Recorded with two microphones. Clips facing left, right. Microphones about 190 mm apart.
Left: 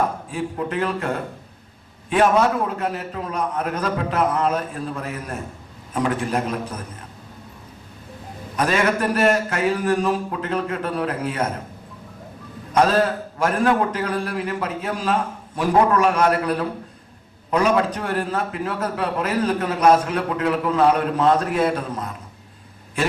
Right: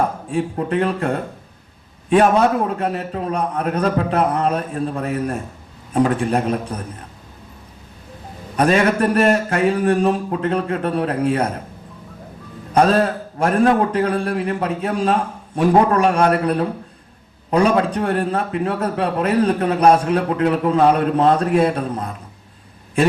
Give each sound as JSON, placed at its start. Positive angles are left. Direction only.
{"t": 0.3, "sound": "a man's voice", "side_deg": -35}
{"t": 8.5, "sound": "a man's voice", "side_deg": -35}
{"t": 12.7, "sound": "a man's voice", "side_deg": -35}